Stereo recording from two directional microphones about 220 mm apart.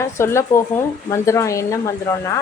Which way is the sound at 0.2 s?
10° left (ahead or behind).